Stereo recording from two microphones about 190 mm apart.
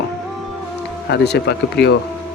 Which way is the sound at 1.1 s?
60° left (ahead or behind).